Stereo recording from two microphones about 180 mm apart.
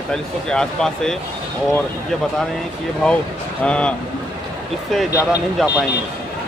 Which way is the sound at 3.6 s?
5° left (ahead or behind).